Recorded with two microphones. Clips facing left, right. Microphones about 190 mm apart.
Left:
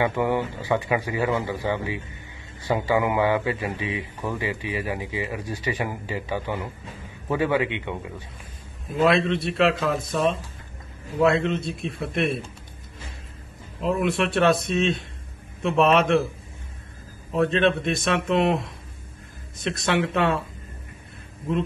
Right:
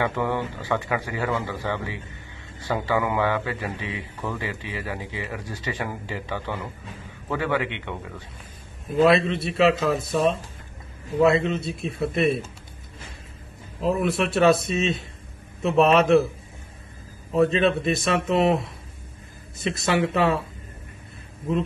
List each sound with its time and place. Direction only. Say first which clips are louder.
0.0 s a man's voice: left 2 dB; 15° left (ahead or behind)
8.9 s a man's voice: right 2 dB; centre (ahead or behind)
13.7 s a man's voice: even; centre (ahead or behind)
17.3 s a man's voice: right 1 dB; centre (ahead or behind)